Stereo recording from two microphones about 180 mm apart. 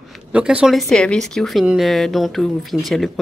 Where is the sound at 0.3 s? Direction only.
5° right (ahead or behind).